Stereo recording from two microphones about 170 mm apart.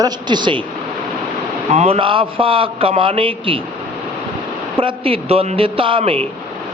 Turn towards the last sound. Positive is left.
turn(degrees=-30)  # may be behind; listen again after turning